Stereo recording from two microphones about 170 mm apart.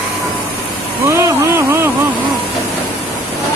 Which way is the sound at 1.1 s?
15° right (ahead or behind).